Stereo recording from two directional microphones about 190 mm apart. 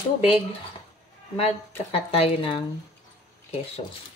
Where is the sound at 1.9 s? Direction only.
30° left (ahead or behind).